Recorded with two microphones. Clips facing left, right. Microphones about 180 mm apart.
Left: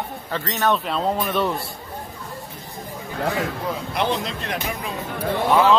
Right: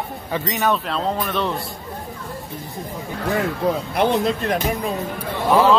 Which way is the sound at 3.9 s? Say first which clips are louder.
Right 4 dB; 55° right (ahead or behind).